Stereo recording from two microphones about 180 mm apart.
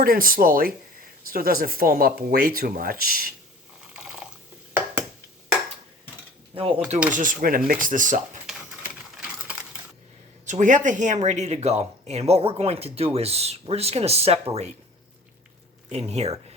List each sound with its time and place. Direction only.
0.0 s speech: 50° right (ahead or behind)
3.9 s a sound: 5° right (ahead or behind)
6.5 s speech: 30° right (ahead or behind)
7.1 s speech: 50° right (ahead or behind)
9.1 s typewriter: 5° right (ahead or behind)
10.4 s speech: 45° right (ahead or behind)
15.9 s speech: 35° right (ahead or behind)